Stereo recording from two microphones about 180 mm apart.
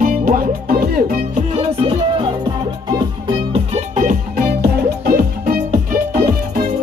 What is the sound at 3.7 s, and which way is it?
Music, 45° right (ahead or behind).